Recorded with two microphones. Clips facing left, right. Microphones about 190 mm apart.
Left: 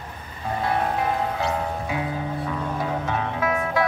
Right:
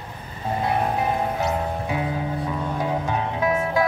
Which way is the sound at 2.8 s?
20° right (ahead or behind).